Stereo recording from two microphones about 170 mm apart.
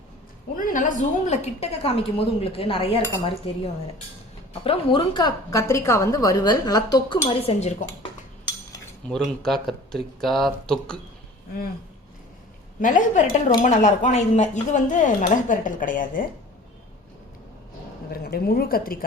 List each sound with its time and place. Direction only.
0.5 s a woman's voice: 50° left (ahead or behind); by 3.0 s 35° left (ahead or behind)
4.6 s a woman's voice: 30° left (ahead or behind)
7.3 s a woman's voice: 35° left (ahead or behind)
9.0 s speech: 5° left (ahead or behind)
12.8 s speech: 50° left (ahead or behind)
18.1 s a woman's voice: 65° left (ahead or behind)